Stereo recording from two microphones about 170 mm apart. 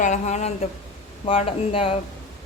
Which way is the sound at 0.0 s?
45° left (ahead or behind).